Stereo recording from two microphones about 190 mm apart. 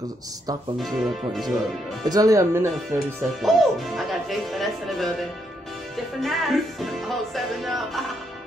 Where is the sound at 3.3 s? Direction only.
Centre (ahead or behind).